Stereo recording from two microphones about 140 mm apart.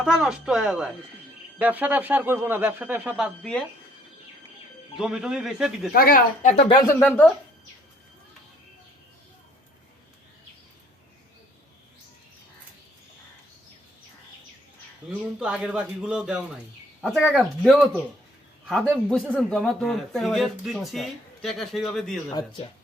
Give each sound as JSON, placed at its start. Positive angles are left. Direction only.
{"t": 0.0, "sound": "a man's voice", "side_deg": -5}
{"t": 3.4, "sound": "a man's voice", "side_deg": 5}
{"t": 4.9, "sound": "a man's voice", "side_deg": -5}
{"t": 5.9, "sound": "speech", "side_deg": 90}
{"t": 6.7, "sound": "speech", "side_deg": 30}
{"t": 7.0, "sound": "speech", "side_deg": 10}
{"t": 15.0, "sound": "a man's voice", "side_deg": -10}
{"t": 22.3, "sound": "speech", "side_deg": 30}